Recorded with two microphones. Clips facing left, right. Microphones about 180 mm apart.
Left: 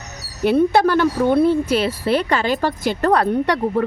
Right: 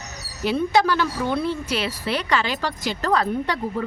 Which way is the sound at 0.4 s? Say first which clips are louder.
Left 5 dB; 55° left (ahead or behind).